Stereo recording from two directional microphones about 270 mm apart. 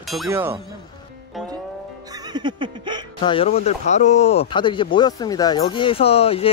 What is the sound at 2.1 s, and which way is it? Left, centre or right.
Music, centre.